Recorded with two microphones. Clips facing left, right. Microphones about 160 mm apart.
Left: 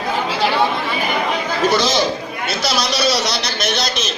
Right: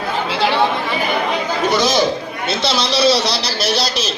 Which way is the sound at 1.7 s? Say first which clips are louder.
Right 1 dB; 15° right (ahead or behind).